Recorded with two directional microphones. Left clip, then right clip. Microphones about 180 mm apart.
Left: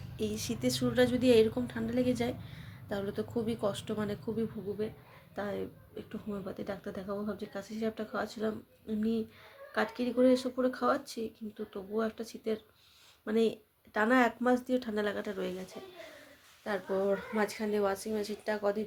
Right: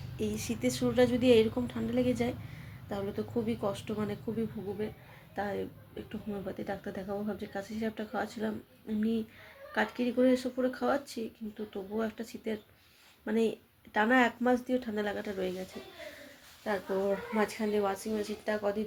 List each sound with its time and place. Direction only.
0.2 s speech: 15° left (ahead or behind)
5.3 s speech: 15° left (ahead or behind)
16.6 s speech: 15° left (ahead or behind)